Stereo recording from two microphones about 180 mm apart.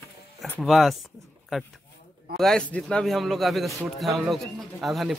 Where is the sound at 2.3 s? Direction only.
5° left (ahead or behind).